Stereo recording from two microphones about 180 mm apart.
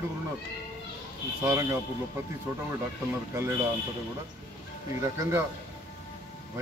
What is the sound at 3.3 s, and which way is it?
Speech, 15° right (ahead or behind).